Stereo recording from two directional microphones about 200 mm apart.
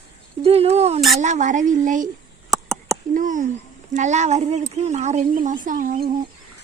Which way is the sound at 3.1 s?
40° right (ahead or behind).